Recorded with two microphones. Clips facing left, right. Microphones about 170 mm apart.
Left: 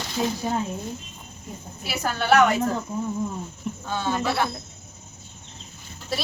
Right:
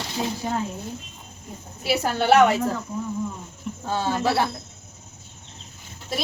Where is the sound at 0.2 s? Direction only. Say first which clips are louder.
Left 2 dB; 15° right (ahead or behind).